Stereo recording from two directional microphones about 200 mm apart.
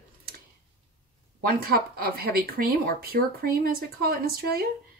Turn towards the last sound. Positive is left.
turn(degrees=-50)  # may be behind; listen again after turning